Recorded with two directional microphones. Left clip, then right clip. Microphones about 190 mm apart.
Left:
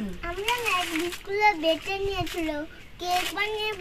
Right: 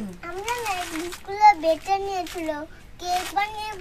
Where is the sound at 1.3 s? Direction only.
30° right (ahead or behind).